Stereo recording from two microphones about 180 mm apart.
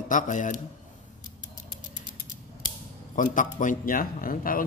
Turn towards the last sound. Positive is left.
turn(degrees=50)  # may be behind; listen again after turning